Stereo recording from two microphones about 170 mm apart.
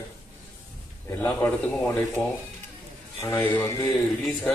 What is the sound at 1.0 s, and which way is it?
Speech, 10° left (ahead or behind).